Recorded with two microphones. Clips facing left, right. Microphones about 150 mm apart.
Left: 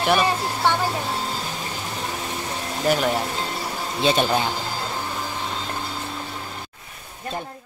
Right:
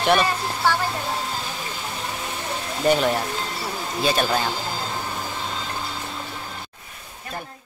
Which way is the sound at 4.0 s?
20° left (ahead or behind).